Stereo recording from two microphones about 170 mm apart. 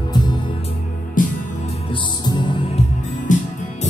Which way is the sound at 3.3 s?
50° left (ahead or behind).